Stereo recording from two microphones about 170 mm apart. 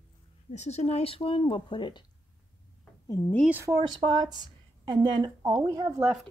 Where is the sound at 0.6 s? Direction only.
40° left (ahead or behind).